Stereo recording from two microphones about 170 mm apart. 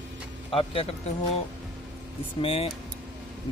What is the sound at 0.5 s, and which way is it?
Speech, 30° left (ahead or behind).